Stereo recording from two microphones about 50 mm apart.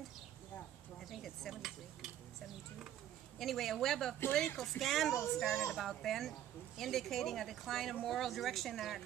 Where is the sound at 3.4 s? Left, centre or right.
Centre.